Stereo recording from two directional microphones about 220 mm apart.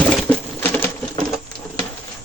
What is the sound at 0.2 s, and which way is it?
Typewriter, 5° left (ahead or behind).